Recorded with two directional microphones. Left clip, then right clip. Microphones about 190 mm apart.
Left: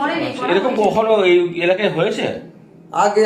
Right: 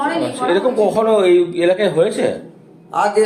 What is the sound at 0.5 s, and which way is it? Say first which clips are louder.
Speech: even; 60° right (ahead or behind).